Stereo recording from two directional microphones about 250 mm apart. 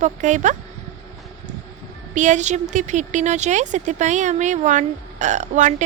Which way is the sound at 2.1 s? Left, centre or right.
Right.